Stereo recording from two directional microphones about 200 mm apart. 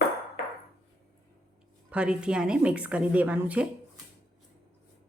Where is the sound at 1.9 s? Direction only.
5° right (ahead or behind).